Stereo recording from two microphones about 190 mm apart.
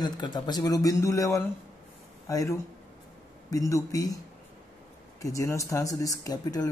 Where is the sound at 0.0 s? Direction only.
20° left (ahead or behind).